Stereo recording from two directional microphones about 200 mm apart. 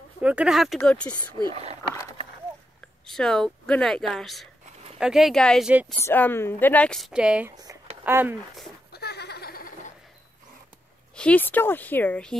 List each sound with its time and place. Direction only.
0.2 s speech: 5° right (ahead or behind)
1.4 s speech: 30° right (ahead or behind)
3.1 s speech: 5° left (ahead or behind)
6.0 s speech: 10° left (ahead or behind); by 8.4 s 10° right (ahead or behind)
8.9 s giggle: 55° left (ahead or behind)
11.1 s speech: 5° left (ahead or behind)